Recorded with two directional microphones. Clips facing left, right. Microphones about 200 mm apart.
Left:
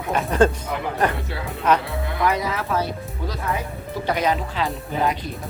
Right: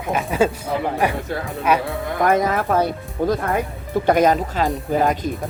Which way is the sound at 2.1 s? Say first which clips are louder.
Right 5 dB; 50° right (ahead or behind).